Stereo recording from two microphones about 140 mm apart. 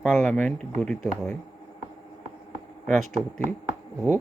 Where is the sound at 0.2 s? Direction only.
10° left (ahead or behind).